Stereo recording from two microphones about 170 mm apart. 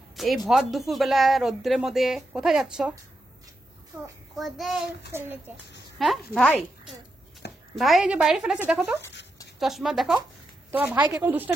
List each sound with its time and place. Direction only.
0.1 s speech: centre (ahead or behind)
3.9 s a woman's voice: 15° right (ahead or behind)
4.4 s speech: centre (ahead or behind)
5.1 s a woman's voice: 15° right (ahead or behind)
6.0 s speech: centre (ahead or behind)
7.7 s a woman's voice: centre (ahead or behind)